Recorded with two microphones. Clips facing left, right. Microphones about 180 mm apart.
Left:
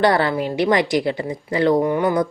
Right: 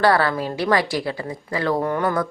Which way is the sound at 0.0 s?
20° left (ahead or behind).